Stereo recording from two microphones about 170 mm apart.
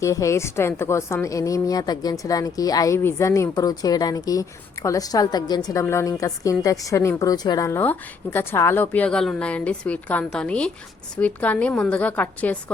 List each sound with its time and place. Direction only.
0.0 s a woman's voice: 20° left (ahead or behind)